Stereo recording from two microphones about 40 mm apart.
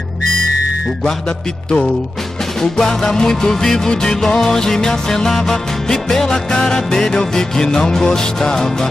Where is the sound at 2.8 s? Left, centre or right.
Centre.